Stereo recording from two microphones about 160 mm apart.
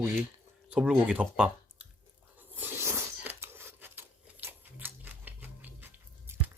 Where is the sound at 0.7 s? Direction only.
5° right (ahead or behind).